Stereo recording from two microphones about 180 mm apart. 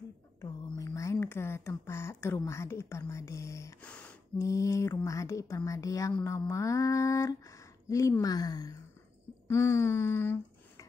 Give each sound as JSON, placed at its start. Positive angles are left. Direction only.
{"t": 0.4, "sound": "speech", "side_deg": 15}